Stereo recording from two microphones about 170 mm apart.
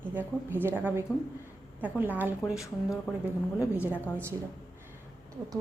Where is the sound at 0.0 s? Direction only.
10° right (ahead or behind).